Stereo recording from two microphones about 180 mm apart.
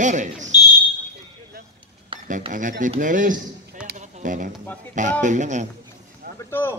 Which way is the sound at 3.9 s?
45° right (ahead or behind).